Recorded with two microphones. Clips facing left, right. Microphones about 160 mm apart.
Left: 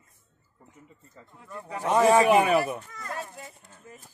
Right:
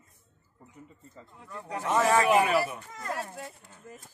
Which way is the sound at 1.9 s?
20° left (ahead or behind).